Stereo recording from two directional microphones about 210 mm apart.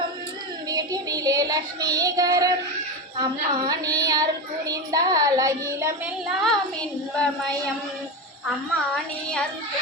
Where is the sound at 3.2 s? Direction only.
20° right (ahead or behind).